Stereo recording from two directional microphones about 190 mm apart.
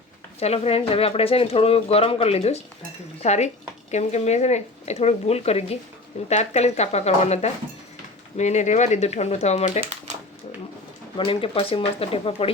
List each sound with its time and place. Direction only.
0.3 s speech: 35° left (ahead or behind)
11.2 s speech: 30° left (ahead or behind)